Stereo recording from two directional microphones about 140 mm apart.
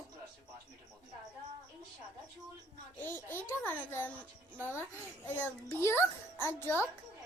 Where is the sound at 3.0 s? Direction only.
15° left (ahead or behind).